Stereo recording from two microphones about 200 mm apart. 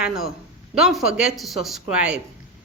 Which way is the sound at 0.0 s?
Centre (ahead or behind).